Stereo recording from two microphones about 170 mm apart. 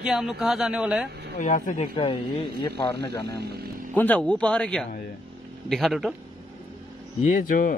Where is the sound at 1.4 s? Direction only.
50° left (ahead or behind).